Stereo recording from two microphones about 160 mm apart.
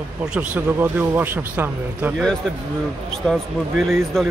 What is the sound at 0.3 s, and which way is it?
Speech, 10° right (ahead or behind).